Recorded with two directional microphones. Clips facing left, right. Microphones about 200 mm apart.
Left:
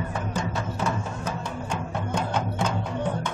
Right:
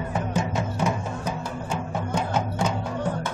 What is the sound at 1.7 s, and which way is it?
Music, 10° right (ahead or behind).